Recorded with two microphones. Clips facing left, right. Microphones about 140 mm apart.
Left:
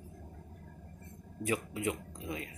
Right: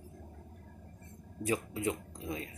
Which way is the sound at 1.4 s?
30° right (ahead or behind).